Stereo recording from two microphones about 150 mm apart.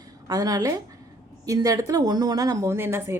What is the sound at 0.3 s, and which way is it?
Speech, 25° right (ahead or behind).